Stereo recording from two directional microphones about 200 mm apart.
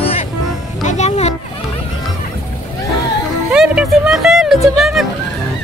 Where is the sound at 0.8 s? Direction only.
35° left (ahead or behind).